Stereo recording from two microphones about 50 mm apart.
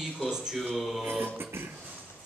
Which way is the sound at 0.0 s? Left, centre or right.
Centre.